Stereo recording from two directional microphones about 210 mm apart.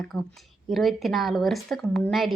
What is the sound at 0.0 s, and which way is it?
Speech, centre (ahead or behind).